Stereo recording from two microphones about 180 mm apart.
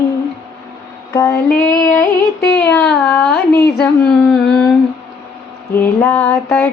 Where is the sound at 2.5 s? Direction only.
5° left (ahead or behind).